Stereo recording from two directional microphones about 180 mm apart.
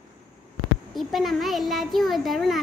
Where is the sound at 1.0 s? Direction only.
Centre (ahead or behind).